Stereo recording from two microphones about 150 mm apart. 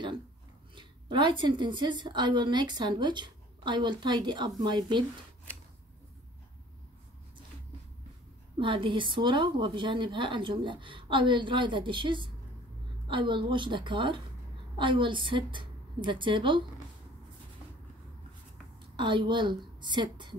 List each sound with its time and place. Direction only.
0.7 s a woman's voice: 30° right (ahead or behind)
8.5 s a woman's voice: 35° right (ahead or behind)
18.8 s a woman's voice: 35° right (ahead or behind)